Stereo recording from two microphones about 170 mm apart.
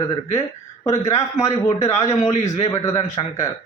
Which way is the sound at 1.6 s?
40° left (ahead or behind).